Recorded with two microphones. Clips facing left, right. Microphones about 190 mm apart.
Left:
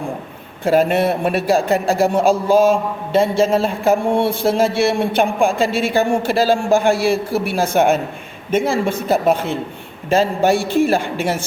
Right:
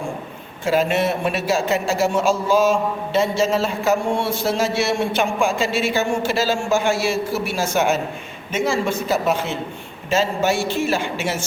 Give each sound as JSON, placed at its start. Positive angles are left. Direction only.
{"t": 0.6, "sound": "a man's voice", "side_deg": 55}